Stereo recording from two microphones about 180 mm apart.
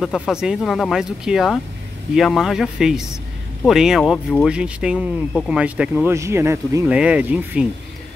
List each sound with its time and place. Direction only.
0.0 s speech: centre (ahead or behind)